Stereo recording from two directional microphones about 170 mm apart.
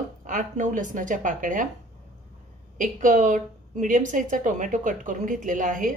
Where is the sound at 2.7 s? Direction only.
50° right (ahead or behind).